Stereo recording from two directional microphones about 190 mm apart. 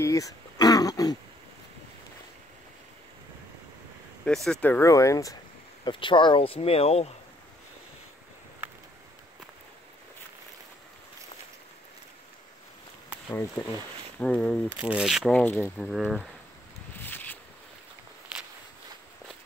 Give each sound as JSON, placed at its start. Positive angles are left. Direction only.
{"t": 0.0, "sound": "throat clearing", "side_deg": 15}
{"t": 4.2, "sound": "speech", "side_deg": 5}
{"t": 13.3, "sound": "speech", "side_deg": 15}
{"t": 14.7, "sound": "speech", "side_deg": -5}
{"t": 15.9, "sound": "speech", "side_deg": -5}
{"t": 17.0, "sound": "a sound", "side_deg": 10}